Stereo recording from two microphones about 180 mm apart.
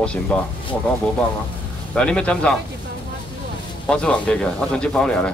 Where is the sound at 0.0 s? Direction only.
5° left (ahead or behind).